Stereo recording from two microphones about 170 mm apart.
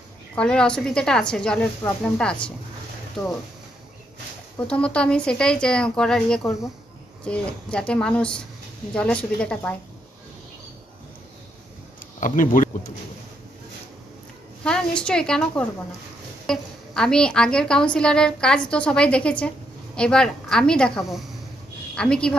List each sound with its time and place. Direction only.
0.4 s a woman's voice: 5° left (ahead or behind)
4.6 s a woman's voice: 5° left (ahead or behind)
12.2 s speech: 50° left (ahead or behind)
14.6 s a woman's voice: 5° left (ahead or behind)